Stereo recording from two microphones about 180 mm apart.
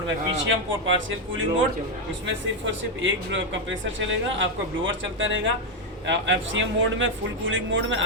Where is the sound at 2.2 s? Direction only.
90° right.